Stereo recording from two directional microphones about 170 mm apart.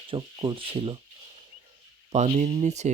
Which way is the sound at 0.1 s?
30° right (ahead or behind).